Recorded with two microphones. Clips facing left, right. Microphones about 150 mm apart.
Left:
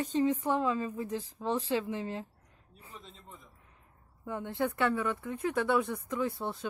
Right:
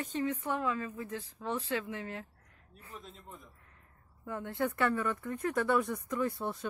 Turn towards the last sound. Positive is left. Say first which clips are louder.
# even
turn(degrees=0)  # may be behind; listen again after turning